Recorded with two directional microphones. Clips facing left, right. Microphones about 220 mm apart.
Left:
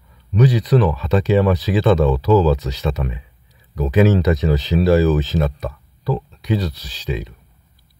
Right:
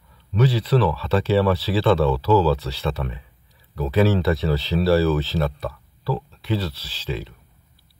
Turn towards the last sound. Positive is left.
turn(degrees=15)  # may be behind; listen again after turning